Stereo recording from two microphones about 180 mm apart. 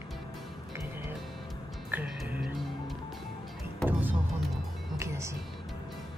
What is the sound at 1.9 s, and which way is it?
Music, 10° right (ahead or behind).